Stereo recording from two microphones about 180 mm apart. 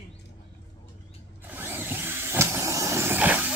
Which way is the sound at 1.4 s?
10° right (ahead or behind).